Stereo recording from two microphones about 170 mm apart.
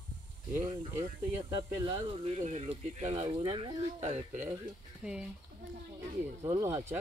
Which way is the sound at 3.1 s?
25° right (ahead or behind).